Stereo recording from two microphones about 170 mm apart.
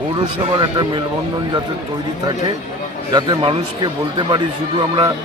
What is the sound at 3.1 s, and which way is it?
Speech, 30° right (ahead or behind).